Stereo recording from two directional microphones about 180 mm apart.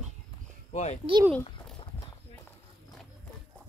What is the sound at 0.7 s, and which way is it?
Speech, 40° left (ahead or behind).